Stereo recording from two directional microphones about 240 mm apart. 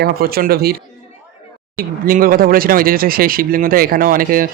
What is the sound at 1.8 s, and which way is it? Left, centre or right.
Speech, right.